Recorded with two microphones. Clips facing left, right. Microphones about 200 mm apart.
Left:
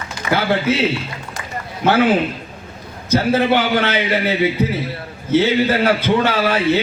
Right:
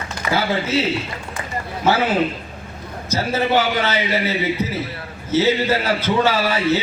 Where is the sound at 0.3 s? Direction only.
60° left (ahead or behind).